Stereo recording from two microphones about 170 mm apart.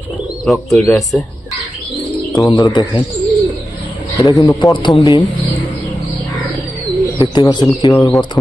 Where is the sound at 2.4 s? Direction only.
20° left (ahead or behind).